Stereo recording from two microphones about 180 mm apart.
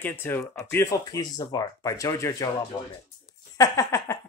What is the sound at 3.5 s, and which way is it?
Speech, 20° left (ahead or behind).